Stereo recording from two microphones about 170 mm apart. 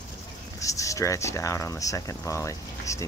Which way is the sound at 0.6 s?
20° left (ahead or behind).